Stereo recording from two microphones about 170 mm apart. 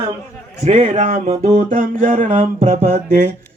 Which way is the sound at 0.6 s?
45° right (ahead or behind).